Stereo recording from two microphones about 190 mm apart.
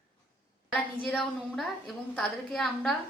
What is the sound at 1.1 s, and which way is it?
A woman's voice, centre (ahead or behind).